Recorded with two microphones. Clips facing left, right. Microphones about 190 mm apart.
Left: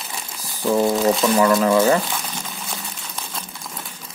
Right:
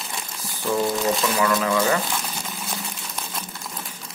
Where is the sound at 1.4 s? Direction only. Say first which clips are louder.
Left 6 dB; 35° left (ahead or behind).